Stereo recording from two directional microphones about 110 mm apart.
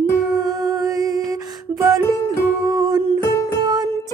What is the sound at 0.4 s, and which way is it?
Music, 35° right (ahead or behind).